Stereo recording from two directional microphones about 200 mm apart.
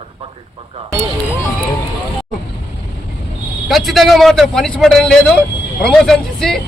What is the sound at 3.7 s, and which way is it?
A man's voice, centre (ahead or behind).